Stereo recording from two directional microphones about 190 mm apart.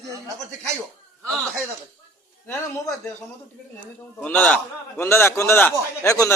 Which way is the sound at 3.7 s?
10° left (ahead or behind).